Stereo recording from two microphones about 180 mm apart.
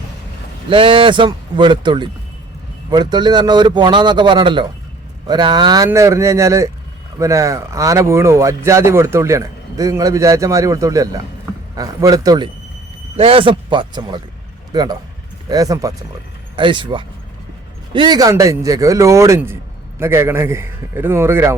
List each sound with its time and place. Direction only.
0.7 s a man's voice: 30° right (ahead or behind); by 21.5 s 15° right (ahead or behind)